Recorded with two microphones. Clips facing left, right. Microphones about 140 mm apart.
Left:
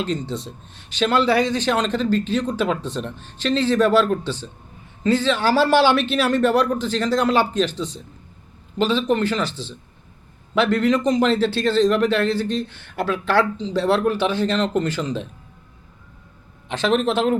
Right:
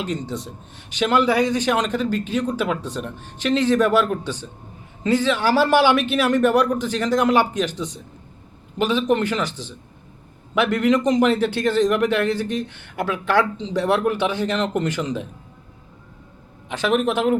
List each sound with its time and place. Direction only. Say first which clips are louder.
0.0 s speech: left 2 dB; 15° right (ahead or behind)
16.6 s speech: left 1 dB; 10° right (ahead or behind)